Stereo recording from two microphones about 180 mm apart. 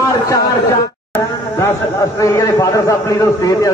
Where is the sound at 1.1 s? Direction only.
15° left (ahead or behind).